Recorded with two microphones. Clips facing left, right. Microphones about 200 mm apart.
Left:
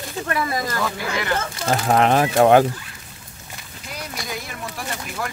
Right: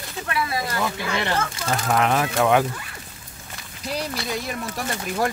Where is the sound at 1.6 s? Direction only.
35° left (ahead or behind).